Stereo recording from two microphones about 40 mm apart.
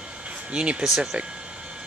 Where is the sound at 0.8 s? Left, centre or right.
Centre.